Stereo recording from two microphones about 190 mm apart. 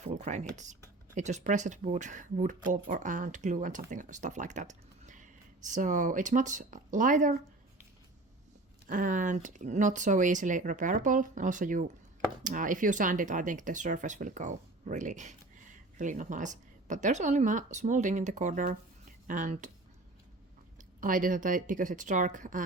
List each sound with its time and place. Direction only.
0.0 s a sound: 40° right (ahead or behind)
0.5 s speech: 40° right (ahead or behind)
8.9 s speech: 45° right (ahead or behind)
21.0 s speech: 45° right (ahead or behind)